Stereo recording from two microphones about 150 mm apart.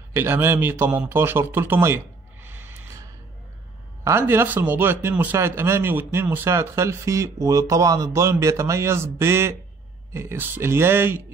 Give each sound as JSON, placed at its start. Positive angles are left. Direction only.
{"t": 0.1, "sound": "a man's voice", "side_deg": -15}
{"t": 2.4, "sound": "gasp", "side_deg": -15}
{"t": 4.0, "sound": "a man's voice", "side_deg": -15}